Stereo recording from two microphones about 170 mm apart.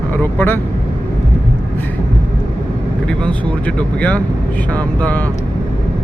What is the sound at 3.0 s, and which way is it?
Speech, 5° left (ahead or behind).